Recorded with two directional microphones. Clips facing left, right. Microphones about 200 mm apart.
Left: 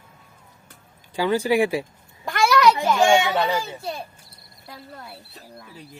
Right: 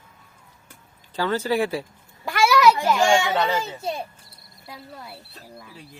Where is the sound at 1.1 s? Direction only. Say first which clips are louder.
Left 3 dB; 15° left (ahead or behind).